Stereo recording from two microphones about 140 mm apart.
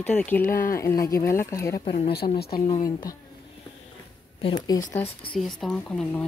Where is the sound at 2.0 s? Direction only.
90° left.